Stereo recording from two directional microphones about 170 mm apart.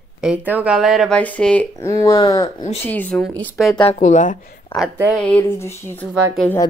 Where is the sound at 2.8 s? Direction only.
10° left (ahead or behind).